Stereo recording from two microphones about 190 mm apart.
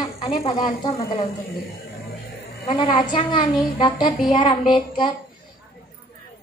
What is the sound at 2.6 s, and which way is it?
A woman's voice, 30° left (ahead or behind).